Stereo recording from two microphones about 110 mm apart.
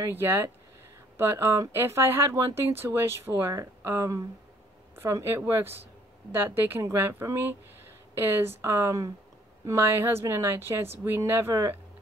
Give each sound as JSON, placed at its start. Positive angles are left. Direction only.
{"t": 0.0, "sound": "speech", "side_deg": -20}